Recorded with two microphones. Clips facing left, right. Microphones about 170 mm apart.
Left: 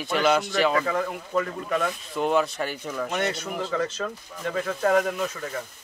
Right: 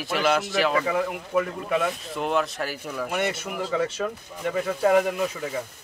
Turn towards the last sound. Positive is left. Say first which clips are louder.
# right 2 dB
turn(degrees=-10)  # may be behind; listen again after turning